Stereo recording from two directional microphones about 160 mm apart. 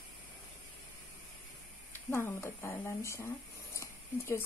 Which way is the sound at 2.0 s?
15° left (ahead or behind).